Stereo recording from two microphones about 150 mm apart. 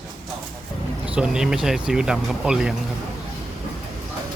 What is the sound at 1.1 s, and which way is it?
Speech, 5° right (ahead or behind).